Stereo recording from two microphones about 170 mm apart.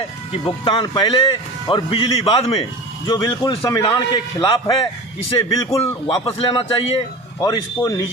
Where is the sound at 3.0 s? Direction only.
25° left (ahead or behind).